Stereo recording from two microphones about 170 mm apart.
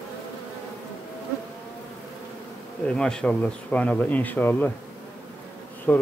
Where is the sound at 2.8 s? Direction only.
5° left (ahead or behind).